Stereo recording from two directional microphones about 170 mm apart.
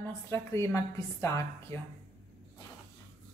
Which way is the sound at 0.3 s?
15° left (ahead or behind).